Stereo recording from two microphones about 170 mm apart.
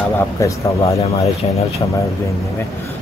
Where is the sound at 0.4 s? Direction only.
20° left (ahead or behind).